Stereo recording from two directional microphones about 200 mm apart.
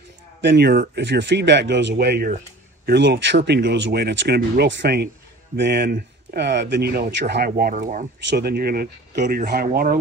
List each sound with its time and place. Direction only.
0.4 s speech: 55° right (ahead or behind); by 8.1 s 40° right (ahead or behind)
8.3 s speech: 55° right (ahead or behind)